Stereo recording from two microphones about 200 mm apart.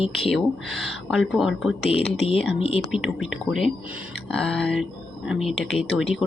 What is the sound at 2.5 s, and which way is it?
Speech, 30° left (ahead or behind).